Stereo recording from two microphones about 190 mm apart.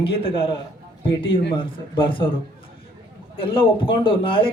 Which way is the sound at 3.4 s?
30° left (ahead or behind).